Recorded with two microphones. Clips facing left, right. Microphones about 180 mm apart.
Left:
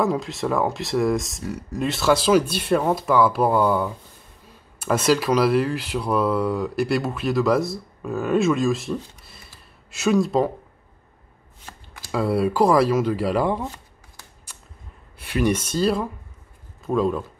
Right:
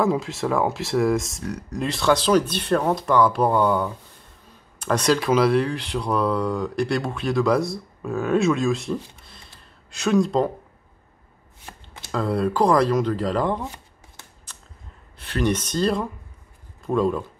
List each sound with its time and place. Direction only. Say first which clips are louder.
0.0 s speech: right 1 dB; centre (ahead or behind)
12.1 s speech: left 2 dB; 10° left (ahead or behind)
15.1 s a man's voice: left 1 dB; 10° left (ahead or behind)